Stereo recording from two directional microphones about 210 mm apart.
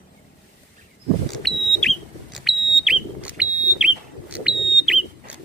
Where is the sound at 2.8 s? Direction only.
5° right (ahead or behind).